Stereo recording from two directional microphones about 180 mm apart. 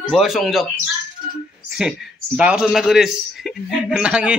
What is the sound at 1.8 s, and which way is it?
A man's voice, 5° right (ahead or behind).